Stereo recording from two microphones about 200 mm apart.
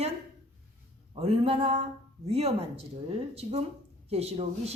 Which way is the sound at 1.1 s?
30° right (ahead or behind).